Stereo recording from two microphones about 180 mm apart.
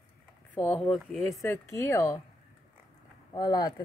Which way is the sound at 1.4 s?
15° left (ahead or behind).